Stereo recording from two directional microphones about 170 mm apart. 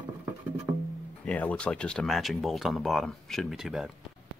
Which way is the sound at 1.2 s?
5° left (ahead or behind).